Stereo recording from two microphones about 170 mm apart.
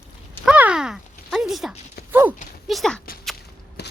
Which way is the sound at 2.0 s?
70° left (ahead or behind).